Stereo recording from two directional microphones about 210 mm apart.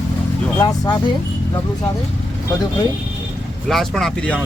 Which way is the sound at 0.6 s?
20° left (ahead or behind).